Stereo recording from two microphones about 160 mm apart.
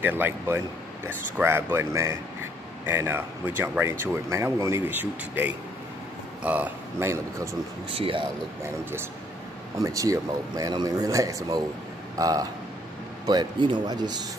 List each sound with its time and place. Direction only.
0.0 s speech: 10° right (ahead or behind)
7.9 s speech: 35° right (ahead or behind)
9.8 s speech: 20° right (ahead or behind)